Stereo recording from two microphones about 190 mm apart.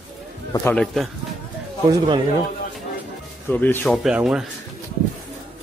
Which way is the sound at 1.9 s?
25° right (ahead or behind).